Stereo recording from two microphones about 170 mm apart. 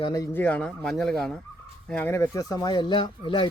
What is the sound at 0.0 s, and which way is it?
Speech, 20° left (ahead or behind).